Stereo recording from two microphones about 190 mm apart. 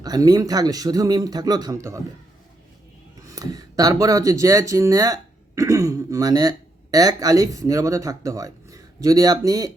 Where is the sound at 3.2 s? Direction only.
20° right (ahead or behind).